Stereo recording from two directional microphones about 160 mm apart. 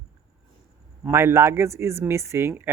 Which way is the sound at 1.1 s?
15° right (ahead or behind).